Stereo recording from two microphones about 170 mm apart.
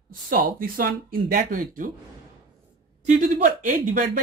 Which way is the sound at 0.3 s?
60° right (ahead or behind).